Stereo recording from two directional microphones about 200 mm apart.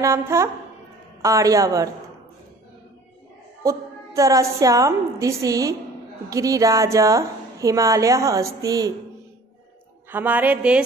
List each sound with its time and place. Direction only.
0.0 s a woman's voice: 15° right (ahead or behind)
3.6 s a woman's voice: 15° right (ahead or behind)
10.1 s a woman's voice: 10° right (ahead or behind)